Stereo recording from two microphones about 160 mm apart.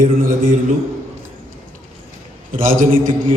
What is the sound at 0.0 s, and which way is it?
Speech, 60° right (ahead or behind).